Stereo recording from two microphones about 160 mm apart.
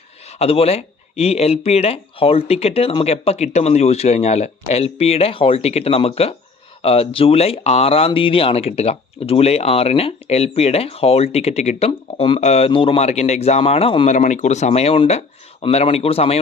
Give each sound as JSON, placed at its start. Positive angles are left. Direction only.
{"t": 0.3, "sound": "speech", "side_deg": 40}
{"t": 14.2, "sound": "speech", "side_deg": 50}